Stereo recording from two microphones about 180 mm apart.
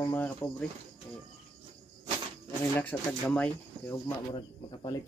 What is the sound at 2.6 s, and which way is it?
Speech, 10° left (ahead or behind).